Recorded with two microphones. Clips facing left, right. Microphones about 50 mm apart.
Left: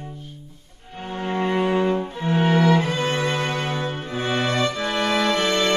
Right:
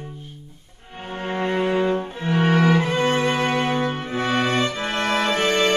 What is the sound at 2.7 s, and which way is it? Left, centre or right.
Music, right.